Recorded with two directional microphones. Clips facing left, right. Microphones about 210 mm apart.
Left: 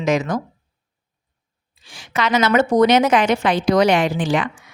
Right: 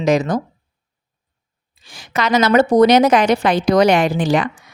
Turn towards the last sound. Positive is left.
turn(degrees=-40)  # may be behind; listen again after turning